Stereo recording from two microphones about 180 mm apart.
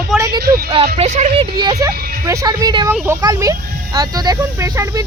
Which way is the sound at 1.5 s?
20° right (ahead or behind).